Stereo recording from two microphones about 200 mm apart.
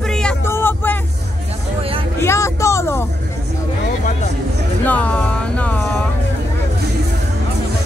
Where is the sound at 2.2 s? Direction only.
15° left (ahead or behind).